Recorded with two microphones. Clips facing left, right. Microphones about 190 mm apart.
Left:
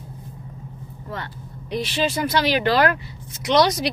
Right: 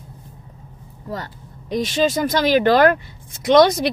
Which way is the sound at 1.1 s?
40° right (ahead or behind).